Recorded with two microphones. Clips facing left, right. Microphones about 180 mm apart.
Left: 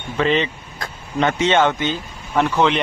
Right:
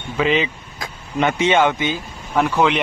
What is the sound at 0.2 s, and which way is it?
A man's voice, 5° right (ahead or behind).